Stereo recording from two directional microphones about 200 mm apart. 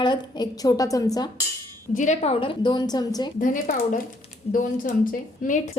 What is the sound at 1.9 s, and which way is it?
A woman's voice, 35° left (ahead or behind).